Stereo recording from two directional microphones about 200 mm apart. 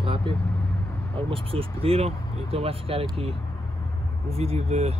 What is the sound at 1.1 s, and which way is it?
Speech, 25° right (ahead or behind).